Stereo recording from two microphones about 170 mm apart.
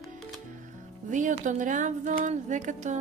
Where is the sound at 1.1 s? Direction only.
50° right (ahead or behind).